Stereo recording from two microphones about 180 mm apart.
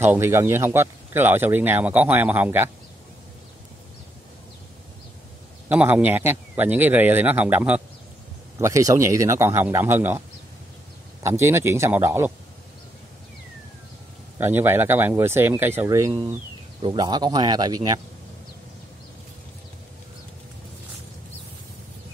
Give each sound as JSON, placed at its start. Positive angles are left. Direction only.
{"t": 0.0, "sound": "speech", "side_deg": -15}
{"t": 5.7, "sound": "speech", "side_deg": -10}
{"t": 11.2, "sound": "speech", "side_deg": -15}
{"t": 14.4, "sound": "speech", "side_deg": -10}